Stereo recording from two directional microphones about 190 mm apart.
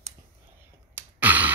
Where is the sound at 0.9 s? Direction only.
10° right (ahead or behind).